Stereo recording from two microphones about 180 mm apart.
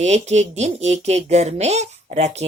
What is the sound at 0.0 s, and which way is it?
Speech, 40° right (ahead or behind).